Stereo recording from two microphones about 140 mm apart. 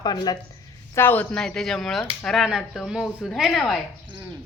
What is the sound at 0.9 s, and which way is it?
A woman's voice, 15° left (ahead or behind).